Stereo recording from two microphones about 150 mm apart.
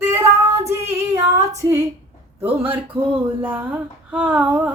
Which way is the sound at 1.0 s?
20° right (ahead or behind).